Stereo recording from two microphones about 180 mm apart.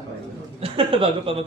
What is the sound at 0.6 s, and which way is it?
Speech, 30° right (ahead or behind).